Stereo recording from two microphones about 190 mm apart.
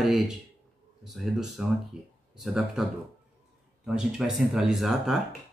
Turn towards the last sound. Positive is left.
turn(degrees=0)  # may be behind; listen again after turning